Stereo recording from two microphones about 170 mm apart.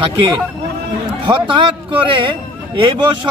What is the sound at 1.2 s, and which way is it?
A man's voice, 30° right (ahead or behind).